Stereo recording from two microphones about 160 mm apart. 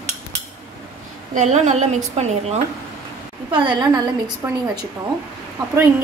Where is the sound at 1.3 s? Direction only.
45° right (ahead or behind).